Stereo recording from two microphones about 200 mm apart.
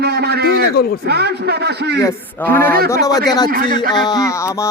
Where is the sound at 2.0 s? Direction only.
15° left (ahead or behind).